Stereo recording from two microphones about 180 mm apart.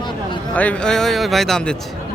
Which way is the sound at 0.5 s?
10° left (ahead or behind).